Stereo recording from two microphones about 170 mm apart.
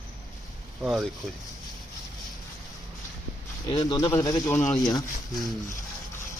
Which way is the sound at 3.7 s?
25° left (ahead or behind).